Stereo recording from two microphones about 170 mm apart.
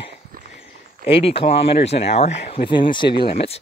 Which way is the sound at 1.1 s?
35° left (ahead or behind).